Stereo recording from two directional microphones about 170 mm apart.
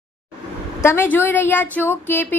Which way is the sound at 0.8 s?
15° left (ahead or behind).